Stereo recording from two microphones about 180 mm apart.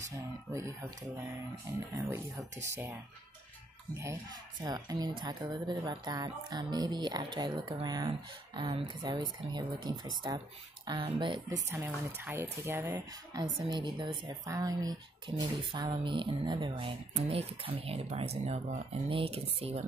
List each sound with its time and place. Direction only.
0.5 s speech: 15° right (ahead or behind)
2.0 s speech: 15° right (ahead or behind)
11.7 s speech: 10° right (ahead or behind); by 19.8 s 35° right (ahead or behind)